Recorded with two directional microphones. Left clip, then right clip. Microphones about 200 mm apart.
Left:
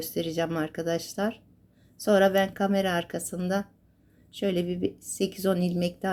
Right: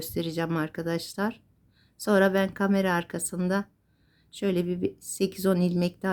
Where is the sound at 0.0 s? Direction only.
15° right (ahead or behind).